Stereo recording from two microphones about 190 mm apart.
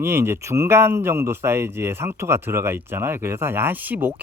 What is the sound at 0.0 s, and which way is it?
Speech, 15° right (ahead or behind).